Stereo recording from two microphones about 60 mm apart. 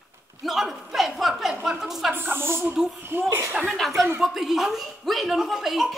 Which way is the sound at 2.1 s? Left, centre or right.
Right.